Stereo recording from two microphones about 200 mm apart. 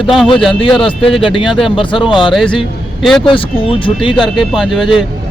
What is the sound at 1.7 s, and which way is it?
Speech, 25° left (ahead or behind).